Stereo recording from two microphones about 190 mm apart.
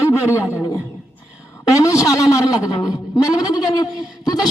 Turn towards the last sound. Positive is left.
turn(degrees=20)  # may be behind; listen again after turning